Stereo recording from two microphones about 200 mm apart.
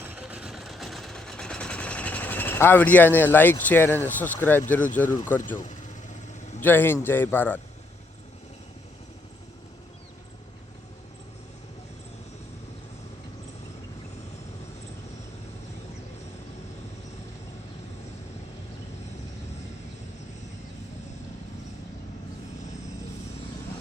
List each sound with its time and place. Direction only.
0.0 s a sound: 5° right (ahead or behind); by 3.9 s 10° left (ahead or behind)
4.0 s a man's voice: 10° left (ahead or behind)
5.0 s speech: 40° left (ahead or behind)
5.5 s vehicle: 40° left (ahead or behind)
6.6 s a man's voice: 10° left (ahead or behind)